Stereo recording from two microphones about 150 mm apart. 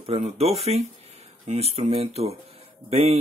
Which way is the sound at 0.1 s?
45° right (ahead or behind).